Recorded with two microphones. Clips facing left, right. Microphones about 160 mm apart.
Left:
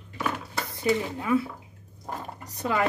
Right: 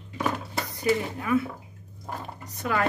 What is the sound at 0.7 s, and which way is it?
Speech, 25° left (ahead or behind).